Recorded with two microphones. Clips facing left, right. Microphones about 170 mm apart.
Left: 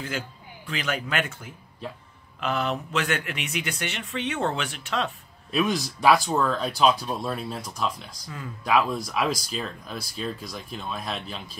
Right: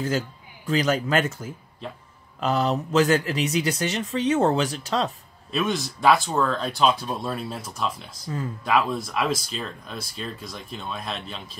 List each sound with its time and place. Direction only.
0.7 s speech: 40° right (ahead or behind)
5.5 s speech: centre (ahead or behind)